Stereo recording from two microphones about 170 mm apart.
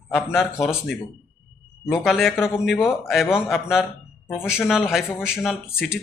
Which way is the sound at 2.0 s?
Centre (ahead or behind).